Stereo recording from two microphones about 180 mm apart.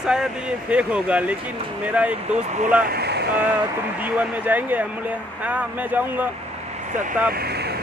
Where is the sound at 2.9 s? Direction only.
65° right (ahead or behind).